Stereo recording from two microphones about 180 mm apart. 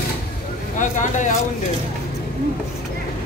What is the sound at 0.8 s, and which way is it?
Speech, 45° left (ahead or behind).